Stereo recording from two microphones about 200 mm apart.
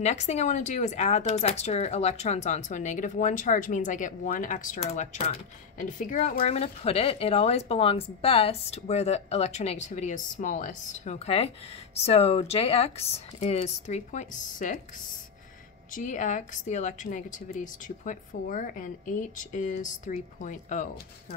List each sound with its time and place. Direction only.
0.0 s speech: 35° left (ahead or behind)
15.9 s speech: 40° left (ahead or behind)